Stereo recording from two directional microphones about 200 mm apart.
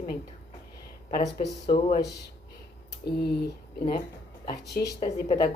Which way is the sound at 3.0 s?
55° left (ahead or behind).